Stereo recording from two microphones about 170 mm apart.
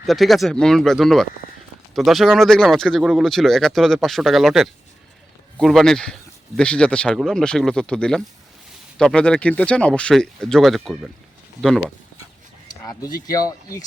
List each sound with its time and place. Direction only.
0.0 s speech: centre (ahead or behind)
12.8 s speech: 20° left (ahead or behind)